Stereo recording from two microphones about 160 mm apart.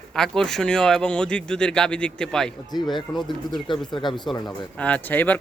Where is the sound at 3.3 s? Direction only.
30° left (ahead or behind).